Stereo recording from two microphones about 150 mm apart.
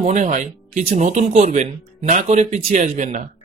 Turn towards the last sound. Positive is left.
turn(degrees=-60)  # may be behind; listen again after turning